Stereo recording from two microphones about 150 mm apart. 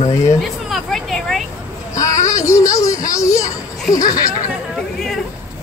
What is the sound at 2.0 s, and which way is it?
Music, 20° left (ahead or behind).